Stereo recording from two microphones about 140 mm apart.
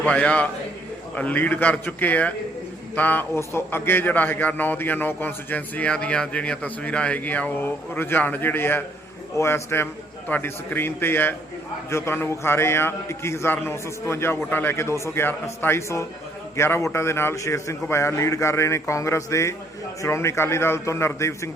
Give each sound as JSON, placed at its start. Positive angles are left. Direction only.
{"t": 0.0, "sound": "a man's voice", "side_deg": 10}